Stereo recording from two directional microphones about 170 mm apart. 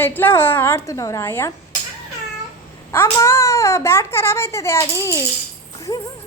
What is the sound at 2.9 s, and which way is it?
A child's voice, 15° left (ahead or behind).